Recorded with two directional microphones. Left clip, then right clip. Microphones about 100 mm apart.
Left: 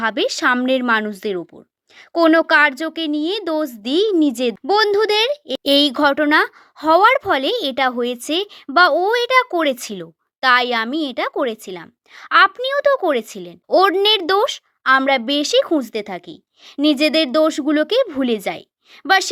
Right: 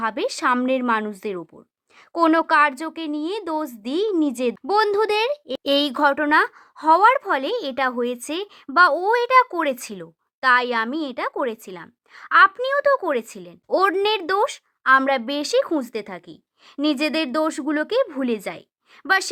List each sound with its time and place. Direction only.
0.0 s a woman's voice: 30° left (ahead or behind)
13.7 s a woman's voice: 20° left (ahead or behind)